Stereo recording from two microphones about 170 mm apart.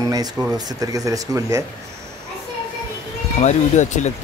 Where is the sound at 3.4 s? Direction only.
45° left (ahead or behind).